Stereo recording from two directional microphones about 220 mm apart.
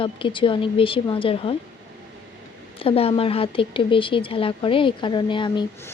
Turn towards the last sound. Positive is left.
turn(degrees=20)  # may be behind; listen again after turning